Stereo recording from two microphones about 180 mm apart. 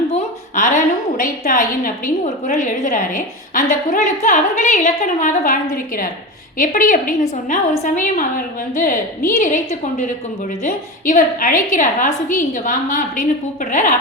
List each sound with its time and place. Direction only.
0.1 s a woman's voice: 45° left (ahead or behind)
10.6 s a woman's voice: 45° left (ahead or behind)